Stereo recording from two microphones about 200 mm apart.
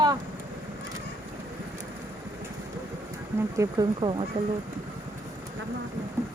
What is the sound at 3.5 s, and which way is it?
Speech, 15° right (ahead or behind).